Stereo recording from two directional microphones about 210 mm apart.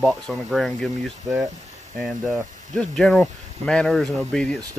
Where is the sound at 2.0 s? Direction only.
Centre (ahead or behind).